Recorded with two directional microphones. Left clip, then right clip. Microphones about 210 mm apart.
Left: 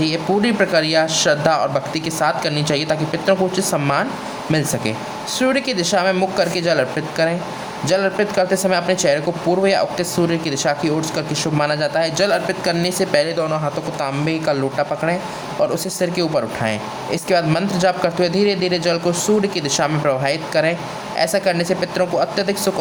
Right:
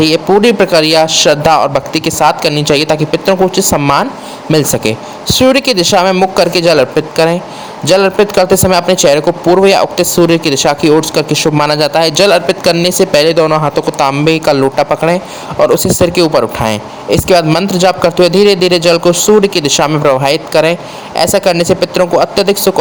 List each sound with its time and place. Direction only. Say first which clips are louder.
0.0 s speech: right 11 dB; 35° right (ahead or behind)